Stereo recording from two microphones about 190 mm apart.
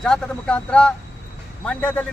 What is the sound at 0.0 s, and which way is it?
Speech, 5° left (ahead or behind).